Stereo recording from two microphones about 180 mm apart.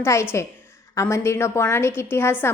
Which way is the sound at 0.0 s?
15° left (ahead or behind).